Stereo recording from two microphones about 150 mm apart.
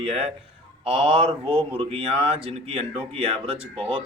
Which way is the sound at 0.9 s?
35° right (ahead or behind).